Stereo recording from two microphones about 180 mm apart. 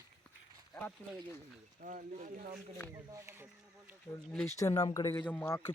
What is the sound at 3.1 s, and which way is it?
Speech, 15° right (ahead or behind).